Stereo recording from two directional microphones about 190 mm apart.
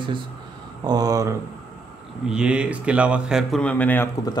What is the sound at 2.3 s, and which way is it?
Speech, 5° right (ahead or behind).